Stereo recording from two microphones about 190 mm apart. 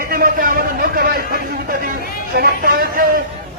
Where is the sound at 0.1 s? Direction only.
50° right (ahead or behind).